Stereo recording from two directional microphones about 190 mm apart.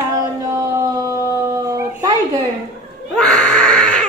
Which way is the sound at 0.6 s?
15° right (ahead or behind).